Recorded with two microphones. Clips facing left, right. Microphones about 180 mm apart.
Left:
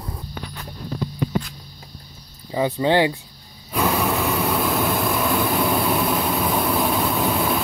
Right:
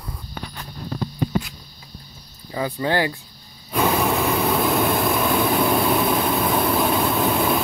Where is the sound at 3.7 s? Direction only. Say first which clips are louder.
Right 1 dB; centre (ahead or behind).